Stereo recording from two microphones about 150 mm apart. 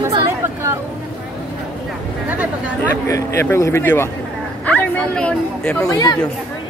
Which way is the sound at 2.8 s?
20° left (ahead or behind).